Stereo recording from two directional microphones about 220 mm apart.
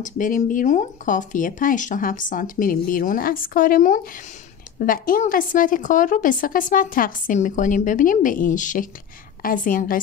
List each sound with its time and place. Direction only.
0.0 s a woman's voice: 35° left (ahead or behind)